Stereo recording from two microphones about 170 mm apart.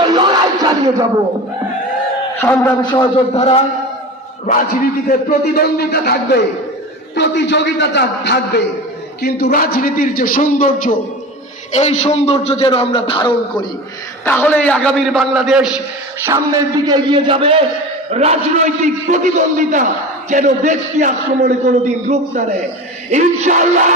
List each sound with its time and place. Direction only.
0.0 s a sound: 25° right (ahead or behind)
2.4 s a man's voice: 10° left (ahead or behind)
3.2 s a man's voice: 35° left (ahead or behind)
4.4 s a man's voice: 55° left (ahead or behind); by 6.4 s 70° left (ahead or behind)
7.2 s a man's voice: 90° left
9.2 s a man's voice: 65° left (ahead or behind)
11.7 s a man's voice: 40° left (ahead or behind)
14.3 s a man's voice: 10° left (ahead or behind)
16.2 s a man's voice: 20° right (ahead or behind); by 23.9 s 45° right (ahead or behind)